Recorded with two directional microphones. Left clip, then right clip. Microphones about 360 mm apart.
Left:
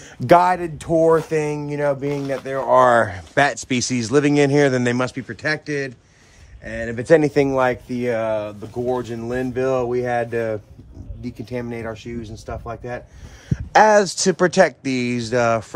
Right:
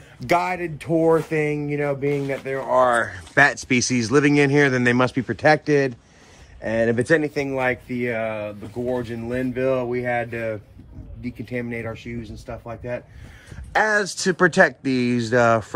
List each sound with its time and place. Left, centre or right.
0.3 s speech: centre
2.7 s speech: left
3.9 s speech: centre
7.1 s speech: left
13.7 s speech: centre